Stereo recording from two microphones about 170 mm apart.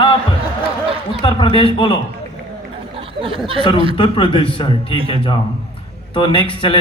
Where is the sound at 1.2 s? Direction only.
30° left (ahead or behind).